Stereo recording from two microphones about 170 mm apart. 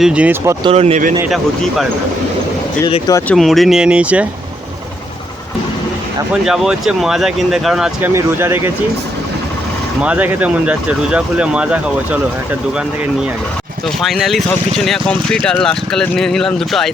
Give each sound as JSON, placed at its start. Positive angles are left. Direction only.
{"t": 0.0, "sound": "speech", "side_deg": -5}
{"t": 0.6, "sound": "speech", "side_deg": -35}
{"t": 1.3, "sound": "speech", "side_deg": 0}
{"t": 3.2, "sound": "speech", "side_deg": 0}
{"t": 6.4, "sound": "speech", "side_deg": -5}
{"t": 8.1, "sound": "speech", "side_deg": -15}
{"t": 10.0, "sound": "speech", "side_deg": -10}
{"t": 13.8, "sound": "speech", "side_deg": 0}